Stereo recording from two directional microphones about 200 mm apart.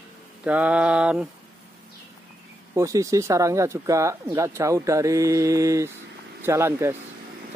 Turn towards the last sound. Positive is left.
turn(degrees=-15)  # may be behind; listen again after turning